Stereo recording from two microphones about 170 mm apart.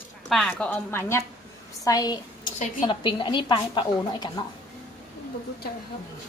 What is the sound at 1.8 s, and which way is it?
A woman's voice, 20° left (ahead or behind).